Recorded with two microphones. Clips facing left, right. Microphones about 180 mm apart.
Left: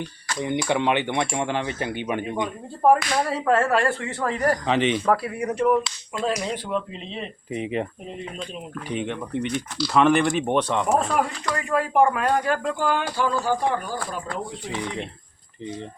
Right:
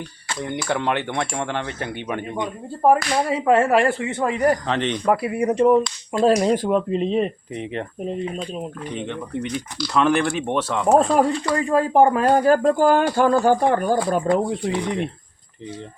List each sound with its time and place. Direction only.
0.4 s speech: 5° left (ahead or behind)
2.8 s speech: 10° right (ahead or behind)
4.6 s speech: 5° left (ahead or behind)
5.0 s speech: 20° right (ahead or behind)
6.1 s speech: 45° right (ahead or behind)
7.5 s speech: 10° left (ahead or behind)
9.0 s speech: 5° left (ahead or behind)
10.8 s speech: 30° right (ahead or behind); by 14.0 s 55° right (ahead or behind)